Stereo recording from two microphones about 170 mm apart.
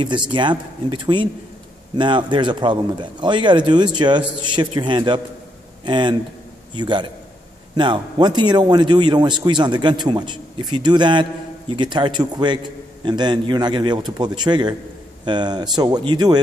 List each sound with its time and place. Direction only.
0.0 s speech: 25° right (ahead or behind)